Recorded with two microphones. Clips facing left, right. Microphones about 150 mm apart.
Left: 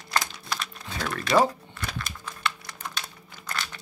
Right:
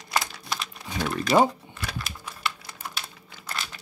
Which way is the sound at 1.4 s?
10° right (ahead or behind).